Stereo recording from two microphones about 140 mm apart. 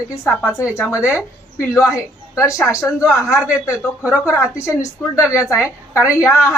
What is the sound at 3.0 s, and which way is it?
Speech, 20° left (ahead or behind).